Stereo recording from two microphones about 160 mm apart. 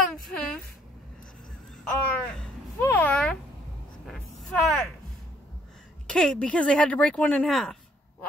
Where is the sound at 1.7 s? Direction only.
5° left (ahead or behind).